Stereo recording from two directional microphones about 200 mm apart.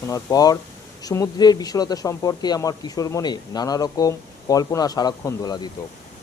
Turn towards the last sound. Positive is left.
turn(degrees=20)  # may be behind; listen again after turning